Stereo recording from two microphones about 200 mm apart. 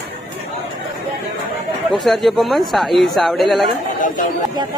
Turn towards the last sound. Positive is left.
turn(degrees=40)  # may be behind; listen again after turning